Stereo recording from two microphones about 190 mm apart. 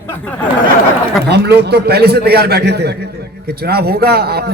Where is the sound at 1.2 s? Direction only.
60° right (ahead or behind).